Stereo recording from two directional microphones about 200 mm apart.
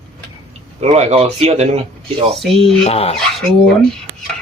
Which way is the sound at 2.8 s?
30° left (ahead or behind).